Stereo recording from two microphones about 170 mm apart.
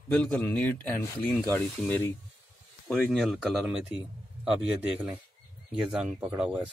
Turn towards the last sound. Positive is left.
turn(degrees=-5)  # may be behind; listen again after turning